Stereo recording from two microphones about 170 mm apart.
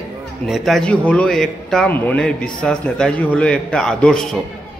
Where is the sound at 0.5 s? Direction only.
Centre (ahead or behind).